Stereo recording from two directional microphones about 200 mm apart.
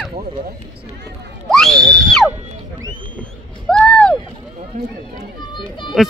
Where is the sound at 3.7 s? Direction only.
5° left (ahead or behind).